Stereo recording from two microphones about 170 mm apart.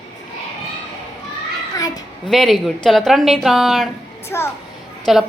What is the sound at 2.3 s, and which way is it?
Speech, centre (ahead or behind).